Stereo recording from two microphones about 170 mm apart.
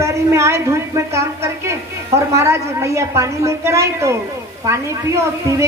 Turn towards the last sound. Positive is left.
turn(degrees=-15)  # may be behind; listen again after turning